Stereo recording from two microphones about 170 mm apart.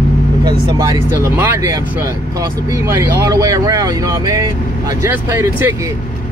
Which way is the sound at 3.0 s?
20° right (ahead or behind).